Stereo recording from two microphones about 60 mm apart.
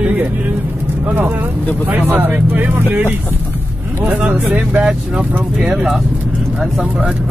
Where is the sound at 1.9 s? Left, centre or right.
Right.